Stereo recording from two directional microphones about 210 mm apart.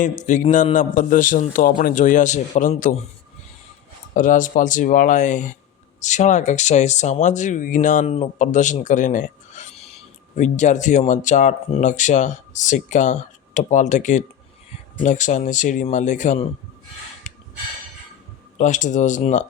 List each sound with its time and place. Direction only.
0.0 s speech: 35° left (ahead or behind)
4.1 s speech: 40° left (ahead or behind)
17.2 s snort: 35° left (ahead or behind)
18.5 s speech: 35° left (ahead or behind)